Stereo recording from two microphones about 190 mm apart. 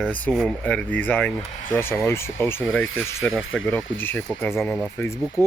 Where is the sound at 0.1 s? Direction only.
5° left (ahead or behind).